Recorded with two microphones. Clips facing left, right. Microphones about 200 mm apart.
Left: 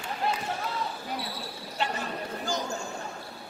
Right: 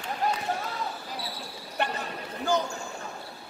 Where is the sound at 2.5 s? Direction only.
60° right (ahead or behind).